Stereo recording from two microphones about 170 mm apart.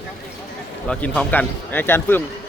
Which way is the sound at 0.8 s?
5° left (ahead or behind).